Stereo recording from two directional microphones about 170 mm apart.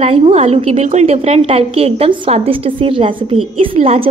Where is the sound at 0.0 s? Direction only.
40° right (ahead or behind).